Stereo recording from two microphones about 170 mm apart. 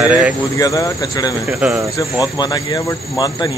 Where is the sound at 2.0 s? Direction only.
20° left (ahead or behind).